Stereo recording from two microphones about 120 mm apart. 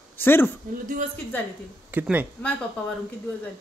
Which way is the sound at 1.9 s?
15° right (ahead or behind).